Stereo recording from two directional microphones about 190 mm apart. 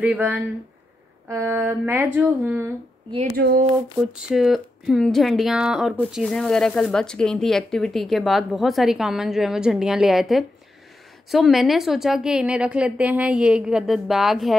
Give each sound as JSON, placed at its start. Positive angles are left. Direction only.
{"t": 0.0, "sound": "a sound", "side_deg": -5}
{"t": 3.3, "sound": "speech", "side_deg": -55}
{"t": 4.1, "sound": "speech", "side_deg": -5}